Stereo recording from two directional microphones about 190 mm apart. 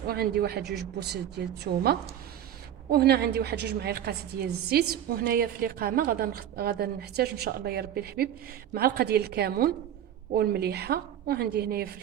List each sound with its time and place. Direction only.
0.1 s a woman's voice: 55° right (ahead or behind)